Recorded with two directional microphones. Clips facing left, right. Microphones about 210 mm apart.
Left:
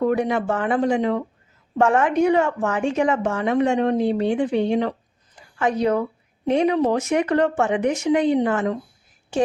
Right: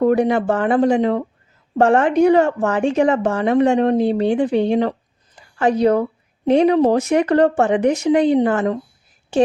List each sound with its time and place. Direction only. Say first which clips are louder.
0.0 s a woman's voice: right 5 dB; 35° right (ahead or behind)